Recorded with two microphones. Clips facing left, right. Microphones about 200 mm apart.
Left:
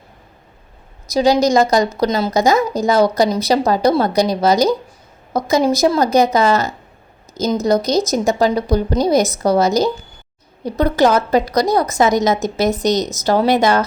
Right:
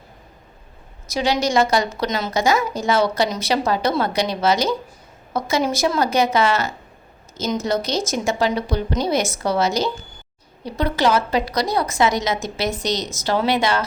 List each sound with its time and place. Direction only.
1.1 s a woman's voice: 40° left (ahead or behind)